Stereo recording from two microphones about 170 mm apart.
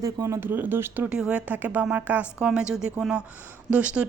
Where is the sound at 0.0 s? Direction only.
15° right (ahead or behind).